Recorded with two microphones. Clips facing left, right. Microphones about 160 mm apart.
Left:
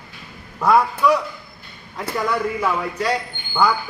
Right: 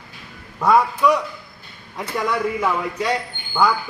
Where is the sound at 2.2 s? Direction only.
5° left (ahead or behind).